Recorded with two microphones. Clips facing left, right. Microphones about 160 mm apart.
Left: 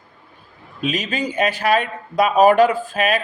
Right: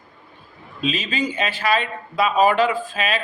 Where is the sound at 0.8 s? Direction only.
50° left (ahead or behind).